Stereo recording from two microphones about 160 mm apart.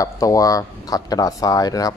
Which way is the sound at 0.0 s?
20° left (ahead or behind).